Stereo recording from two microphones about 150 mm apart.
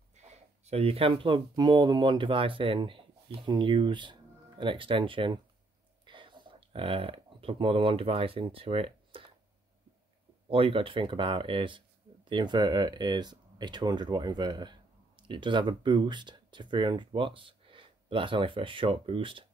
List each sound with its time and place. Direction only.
0.1 s speech: 50° right (ahead or behind)
10.5 s speech: 35° right (ahead or behind)